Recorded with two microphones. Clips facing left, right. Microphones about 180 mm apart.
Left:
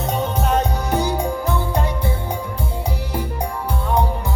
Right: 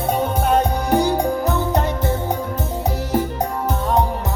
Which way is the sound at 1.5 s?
45° right (ahead or behind).